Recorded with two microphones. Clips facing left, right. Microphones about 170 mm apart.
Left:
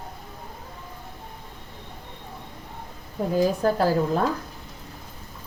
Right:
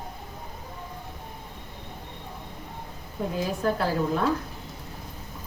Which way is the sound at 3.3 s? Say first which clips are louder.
Left 6 dB; 40° left (ahead or behind).